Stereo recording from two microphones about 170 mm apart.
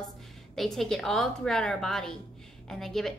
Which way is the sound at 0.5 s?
Centre (ahead or behind).